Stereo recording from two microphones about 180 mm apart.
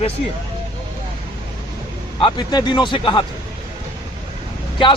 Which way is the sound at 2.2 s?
20° left (ahead or behind).